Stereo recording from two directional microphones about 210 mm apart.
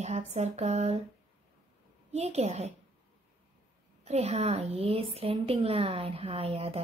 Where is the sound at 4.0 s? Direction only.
30° right (ahead or behind).